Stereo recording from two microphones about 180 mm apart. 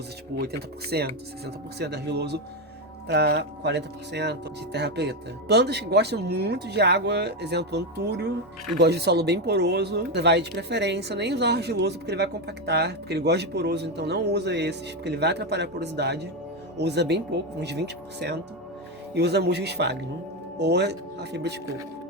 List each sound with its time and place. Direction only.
0.3 s speech: 65° right (ahead or behind)